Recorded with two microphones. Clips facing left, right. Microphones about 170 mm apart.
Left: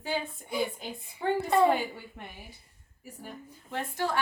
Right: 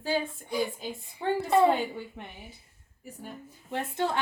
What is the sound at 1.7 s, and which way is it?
Speech, 10° left (ahead or behind).